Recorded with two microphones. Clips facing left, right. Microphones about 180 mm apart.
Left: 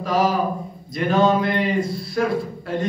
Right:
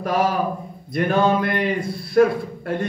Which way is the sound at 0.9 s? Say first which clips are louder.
Left 1 dB; 55° right (ahead or behind).